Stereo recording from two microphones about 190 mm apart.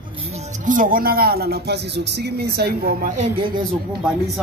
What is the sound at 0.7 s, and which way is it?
Speech, 45° right (ahead or behind).